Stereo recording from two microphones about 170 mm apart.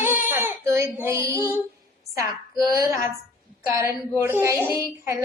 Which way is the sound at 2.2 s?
20° right (ahead or behind).